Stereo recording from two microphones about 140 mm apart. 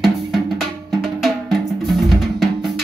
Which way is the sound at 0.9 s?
Centre (ahead or behind).